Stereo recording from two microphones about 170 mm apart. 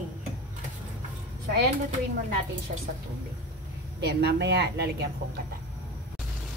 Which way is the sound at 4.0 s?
80° right.